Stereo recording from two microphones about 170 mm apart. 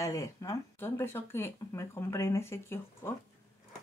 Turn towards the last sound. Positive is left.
turn(degrees=15)  # may be behind; listen again after turning